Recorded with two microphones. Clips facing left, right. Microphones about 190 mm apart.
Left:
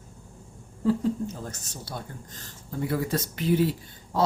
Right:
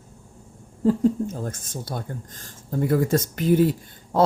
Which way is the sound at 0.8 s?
50° right (ahead or behind).